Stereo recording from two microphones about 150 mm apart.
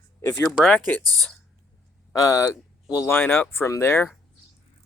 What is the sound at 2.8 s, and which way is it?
Speech, 5° right (ahead or behind).